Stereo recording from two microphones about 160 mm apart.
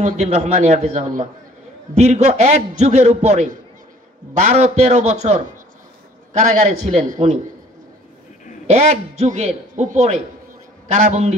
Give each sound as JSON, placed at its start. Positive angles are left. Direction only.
{"t": 0.0, "sound": "a man's voice", "side_deg": -50}
{"t": 8.6, "sound": "a man's voice", "side_deg": -45}